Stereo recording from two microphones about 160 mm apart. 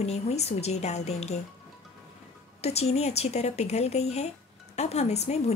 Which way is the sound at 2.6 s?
40° left (ahead or behind).